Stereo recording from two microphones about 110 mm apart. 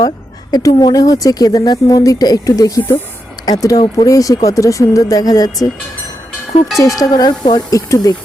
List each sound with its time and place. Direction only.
0.5 s speech: 35° left (ahead or behind)
6.7 s speech: 30° left (ahead or behind)